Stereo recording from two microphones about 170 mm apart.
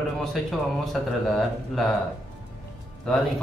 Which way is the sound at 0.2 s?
Centre (ahead or behind).